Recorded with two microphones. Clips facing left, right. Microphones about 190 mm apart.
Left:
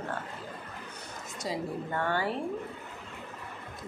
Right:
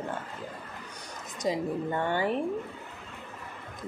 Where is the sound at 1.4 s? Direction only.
20° right (ahead or behind).